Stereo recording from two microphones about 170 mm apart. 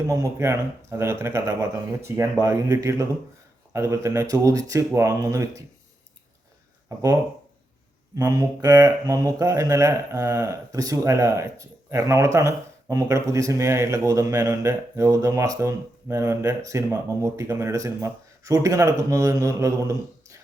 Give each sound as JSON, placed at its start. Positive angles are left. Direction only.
{"t": 0.1, "sound": "speech", "side_deg": -15}
{"t": 6.8, "sound": "speech", "side_deg": -20}